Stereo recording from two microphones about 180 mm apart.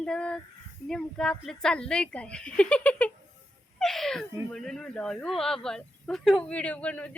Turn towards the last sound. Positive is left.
turn(degrees=5)  # may be behind; listen again after turning